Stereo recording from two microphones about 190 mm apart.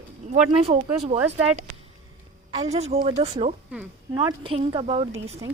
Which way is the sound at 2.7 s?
35° right (ahead or behind).